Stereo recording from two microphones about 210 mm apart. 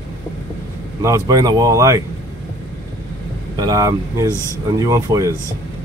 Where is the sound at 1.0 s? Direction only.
15° right (ahead or behind).